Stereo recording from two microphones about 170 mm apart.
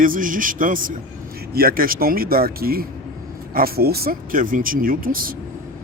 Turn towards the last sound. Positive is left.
turn(degrees=-55)  # may be behind; listen again after turning